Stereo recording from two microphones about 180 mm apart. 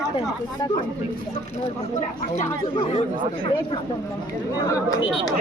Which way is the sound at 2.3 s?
40° left (ahead or behind).